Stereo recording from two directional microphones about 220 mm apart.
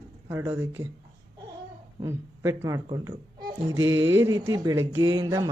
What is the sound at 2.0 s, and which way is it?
Speech, 10° right (ahead or behind).